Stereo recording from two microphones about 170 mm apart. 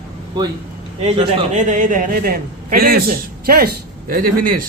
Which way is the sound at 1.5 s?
45° right (ahead or behind).